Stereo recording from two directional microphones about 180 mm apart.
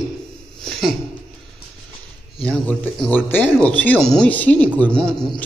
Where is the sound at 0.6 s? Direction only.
Centre (ahead or behind).